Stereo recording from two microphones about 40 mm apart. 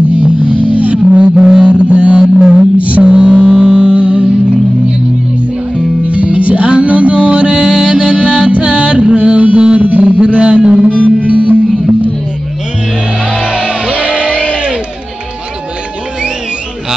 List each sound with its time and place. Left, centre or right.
0.7 s music: right
1.4 s music: centre
1.7 s mantra: right
3.9 s music: right
6.0 s music: right
13.5 s music: right